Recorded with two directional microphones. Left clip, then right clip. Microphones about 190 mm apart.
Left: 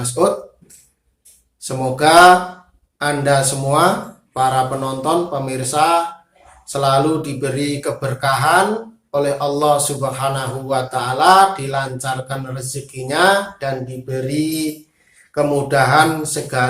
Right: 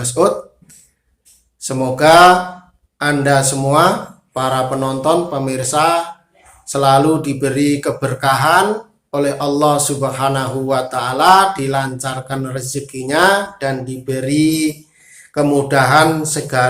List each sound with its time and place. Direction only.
0.0 s a man's voice: 35° right (ahead or behind)
1.6 s a man's voice: 35° right (ahead or behind)